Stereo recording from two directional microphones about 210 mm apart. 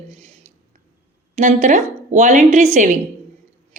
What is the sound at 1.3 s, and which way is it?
A woman's voice, 35° right (ahead or behind).